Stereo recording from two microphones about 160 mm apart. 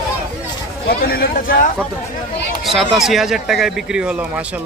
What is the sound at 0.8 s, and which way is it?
Speech, 70° left (ahead or behind).